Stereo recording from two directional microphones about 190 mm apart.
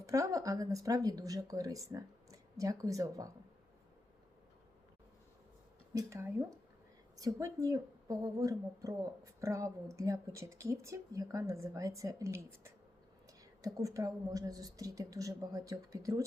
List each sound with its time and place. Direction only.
0.0 s a woman's voice: 15° right (ahead or behind)
5.9 s a woman's voice: 15° right (ahead or behind)